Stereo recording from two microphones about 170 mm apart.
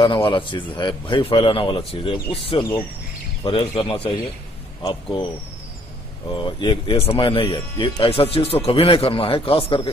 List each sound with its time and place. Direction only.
0.0 s a man's voice: 30° left (ahead or behind)